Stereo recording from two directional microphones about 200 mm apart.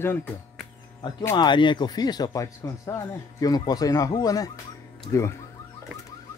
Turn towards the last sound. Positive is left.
turn(degrees=15)  # may be behind; listen again after turning